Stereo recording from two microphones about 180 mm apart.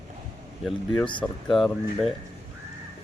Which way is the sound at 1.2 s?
Centre (ahead or behind).